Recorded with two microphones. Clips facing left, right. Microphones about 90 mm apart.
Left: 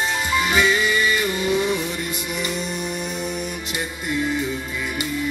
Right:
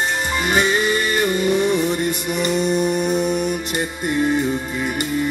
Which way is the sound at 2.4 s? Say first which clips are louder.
Right 11 dB; 55° right (ahead or behind).